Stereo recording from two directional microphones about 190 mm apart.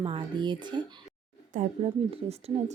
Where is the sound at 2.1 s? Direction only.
30° right (ahead or behind).